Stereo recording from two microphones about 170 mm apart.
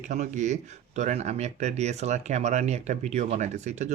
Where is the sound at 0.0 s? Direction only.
45° right (ahead or behind).